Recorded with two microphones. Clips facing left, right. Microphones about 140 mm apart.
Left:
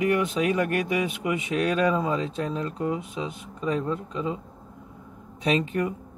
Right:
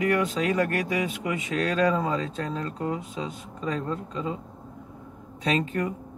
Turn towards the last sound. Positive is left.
turn(degrees=20)  # may be behind; listen again after turning